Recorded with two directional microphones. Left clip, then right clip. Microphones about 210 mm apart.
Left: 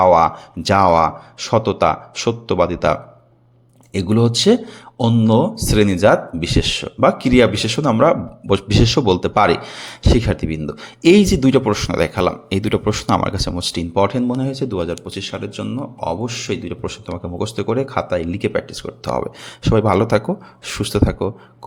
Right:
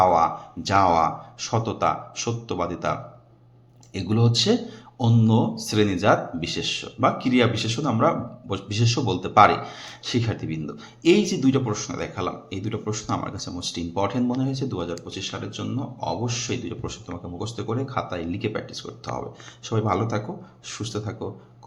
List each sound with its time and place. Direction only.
0.0 s speech: 40° left (ahead or behind)